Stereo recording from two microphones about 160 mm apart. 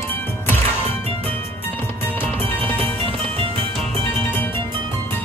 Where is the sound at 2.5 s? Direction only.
10° left (ahead or behind).